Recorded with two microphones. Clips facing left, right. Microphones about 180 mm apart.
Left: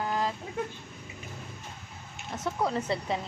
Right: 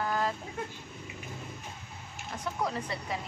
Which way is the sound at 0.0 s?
20° left (ahead or behind).